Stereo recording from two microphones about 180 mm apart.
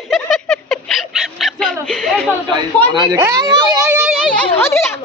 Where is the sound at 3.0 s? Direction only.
20° right (ahead or behind).